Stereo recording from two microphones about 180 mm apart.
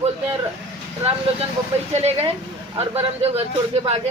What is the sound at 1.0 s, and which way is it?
Speech, 30° right (ahead or behind).